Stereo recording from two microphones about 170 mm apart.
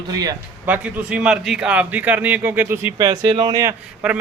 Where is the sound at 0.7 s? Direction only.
10° right (ahead or behind).